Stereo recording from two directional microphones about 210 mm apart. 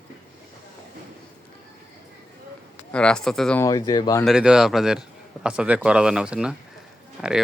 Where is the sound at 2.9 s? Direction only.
5° left (ahead or behind).